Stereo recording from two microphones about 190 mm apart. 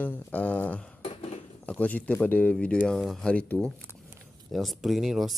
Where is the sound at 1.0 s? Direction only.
35° left (ahead or behind).